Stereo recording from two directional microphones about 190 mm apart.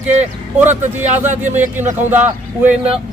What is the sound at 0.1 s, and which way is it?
Speech, 35° right (ahead or behind).